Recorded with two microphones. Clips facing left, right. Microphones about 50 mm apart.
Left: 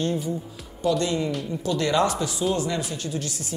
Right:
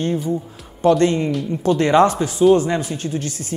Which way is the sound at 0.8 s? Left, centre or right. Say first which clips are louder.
Right 8 dB; right.